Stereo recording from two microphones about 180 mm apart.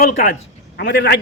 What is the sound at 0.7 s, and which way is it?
Speech, 70° left (ahead or behind).